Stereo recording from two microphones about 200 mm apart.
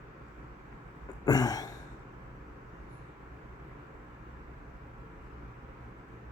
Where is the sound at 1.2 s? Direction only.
20° left (ahead or behind).